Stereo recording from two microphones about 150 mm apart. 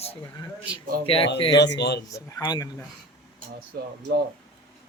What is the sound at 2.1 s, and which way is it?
Speech, 25° left (ahead or behind).